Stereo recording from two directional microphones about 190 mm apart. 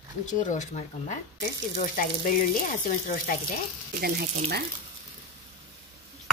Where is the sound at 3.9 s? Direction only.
55° right (ahead or behind).